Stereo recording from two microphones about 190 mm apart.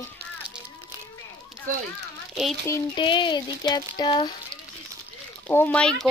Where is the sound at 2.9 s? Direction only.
25° left (ahead or behind).